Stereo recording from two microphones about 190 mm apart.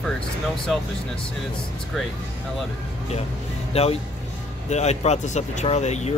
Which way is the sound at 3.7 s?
30° left (ahead or behind).